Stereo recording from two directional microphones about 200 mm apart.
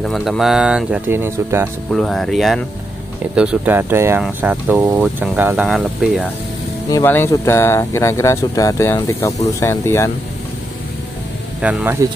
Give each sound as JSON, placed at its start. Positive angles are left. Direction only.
{"t": 0.0, "sound": "speech", "side_deg": 0}
{"t": 1.9, "sound": "speech", "side_deg": 0}
{"t": 6.9, "sound": "speech", "side_deg": 15}
{"t": 11.6, "sound": "speech", "side_deg": -10}